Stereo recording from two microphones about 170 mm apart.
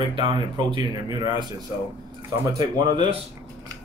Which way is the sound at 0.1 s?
30° right (ahead or behind).